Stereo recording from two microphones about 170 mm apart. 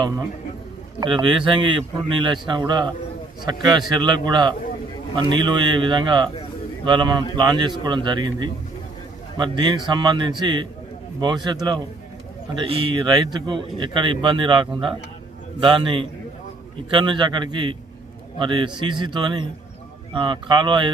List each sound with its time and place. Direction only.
0.9 s a man's voice: 30° right (ahead or behind)